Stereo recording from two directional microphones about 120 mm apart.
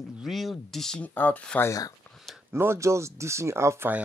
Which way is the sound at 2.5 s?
20° right (ahead or behind).